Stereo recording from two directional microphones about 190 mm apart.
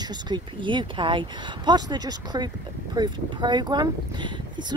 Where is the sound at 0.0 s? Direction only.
20° right (ahead or behind).